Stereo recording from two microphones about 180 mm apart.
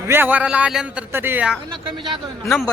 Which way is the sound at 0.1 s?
10° right (ahead or behind).